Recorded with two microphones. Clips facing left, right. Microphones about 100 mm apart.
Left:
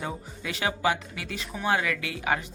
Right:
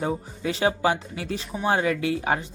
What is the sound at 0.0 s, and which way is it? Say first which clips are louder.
Speech: right 7 dB; 30° right (ahead or behind).